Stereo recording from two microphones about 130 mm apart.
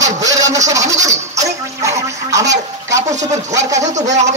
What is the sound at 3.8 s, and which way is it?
Speech, 65° right (ahead or behind).